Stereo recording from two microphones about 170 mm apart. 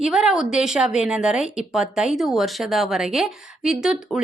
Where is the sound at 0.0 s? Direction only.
5° right (ahead or behind).